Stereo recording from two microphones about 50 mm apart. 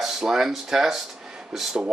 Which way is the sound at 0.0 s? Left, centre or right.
Centre.